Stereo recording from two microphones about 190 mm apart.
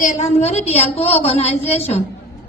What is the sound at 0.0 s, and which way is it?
A woman's voice, 40° left (ahead or behind).